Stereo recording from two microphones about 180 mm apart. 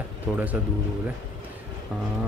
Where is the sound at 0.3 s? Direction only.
5° right (ahead or behind).